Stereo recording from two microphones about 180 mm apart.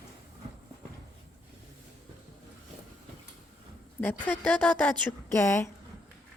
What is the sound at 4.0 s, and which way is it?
A woman's voice, 10° left (ahead or behind).